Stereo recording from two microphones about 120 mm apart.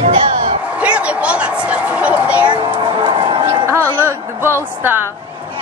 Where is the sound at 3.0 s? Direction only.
40° right (ahead or behind).